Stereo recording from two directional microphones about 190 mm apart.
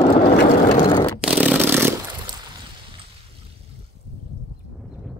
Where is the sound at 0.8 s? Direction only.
25° left (ahead or behind).